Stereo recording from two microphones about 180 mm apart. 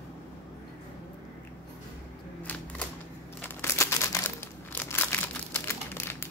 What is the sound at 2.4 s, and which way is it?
Typewriter, 10° left (ahead or behind).